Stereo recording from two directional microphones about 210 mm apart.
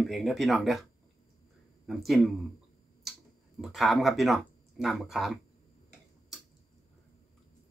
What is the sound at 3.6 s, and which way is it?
Speech, centre (ahead or behind).